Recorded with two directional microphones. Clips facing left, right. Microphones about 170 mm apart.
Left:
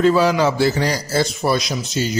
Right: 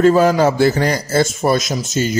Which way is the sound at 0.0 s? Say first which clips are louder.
Right 3 dB; 45° right (ahead or behind).